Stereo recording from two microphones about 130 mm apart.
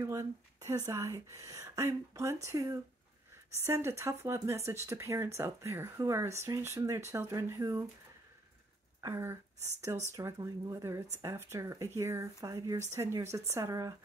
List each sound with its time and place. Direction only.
0.0 s speech: 20° right (ahead or behind)
9.0 s speech: 20° right (ahead or behind)